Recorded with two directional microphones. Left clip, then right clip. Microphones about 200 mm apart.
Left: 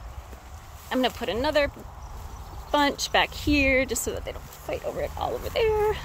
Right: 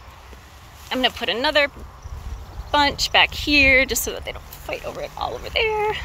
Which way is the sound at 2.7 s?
20° left (ahead or behind).